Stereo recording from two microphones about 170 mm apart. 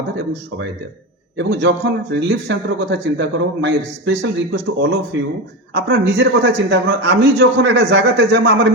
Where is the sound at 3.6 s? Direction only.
90° right.